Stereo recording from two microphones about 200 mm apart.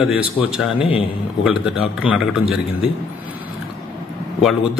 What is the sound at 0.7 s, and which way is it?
Speech, 25° left (ahead or behind).